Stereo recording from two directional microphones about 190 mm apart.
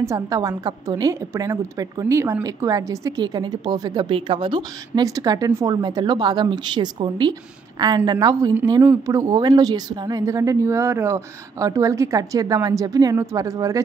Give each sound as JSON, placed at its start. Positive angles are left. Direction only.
{"t": 0.0, "sound": "a woman's voice", "side_deg": -15}